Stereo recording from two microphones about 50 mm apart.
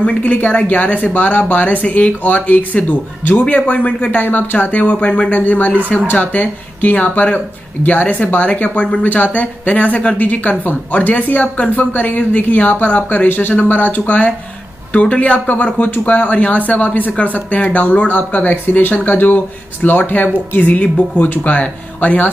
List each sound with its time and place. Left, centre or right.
0.0 s speech: left